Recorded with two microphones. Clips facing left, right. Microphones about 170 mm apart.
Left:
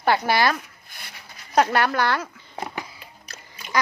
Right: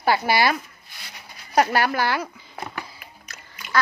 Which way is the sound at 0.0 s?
10° right (ahead or behind).